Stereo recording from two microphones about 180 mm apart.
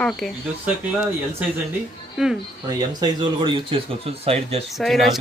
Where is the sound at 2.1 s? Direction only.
5° right (ahead or behind).